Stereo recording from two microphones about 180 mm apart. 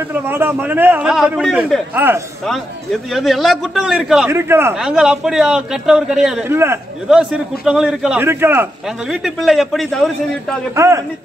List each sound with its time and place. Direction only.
0.0 s a man's voice: 10° right (ahead or behind)
3.1 s a man's voice: centre (ahead or behind)
4.3 s a man's voice: 15° right (ahead or behind)
4.7 s a man's voice: 5° right (ahead or behind)
6.5 s a man's voice: 15° right (ahead or behind)
7.1 s a man's voice: 5° right (ahead or behind)
10.7 s a man's voice: 15° right (ahead or behind)